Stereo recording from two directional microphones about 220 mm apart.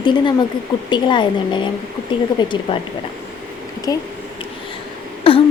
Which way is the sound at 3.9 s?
15° left (ahead or behind).